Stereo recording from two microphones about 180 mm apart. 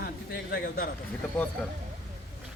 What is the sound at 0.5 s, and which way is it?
Speech, 55° left (ahead or behind).